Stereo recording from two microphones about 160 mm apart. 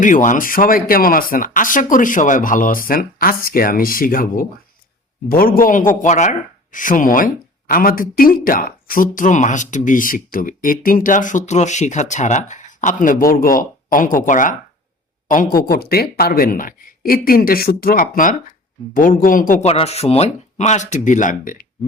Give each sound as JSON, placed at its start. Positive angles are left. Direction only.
{"t": 0.0, "sound": "speech", "side_deg": 55}
{"t": 19.6, "sound": "speech", "side_deg": 40}